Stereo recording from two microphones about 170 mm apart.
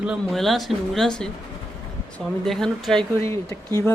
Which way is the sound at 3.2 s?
15° left (ahead or behind).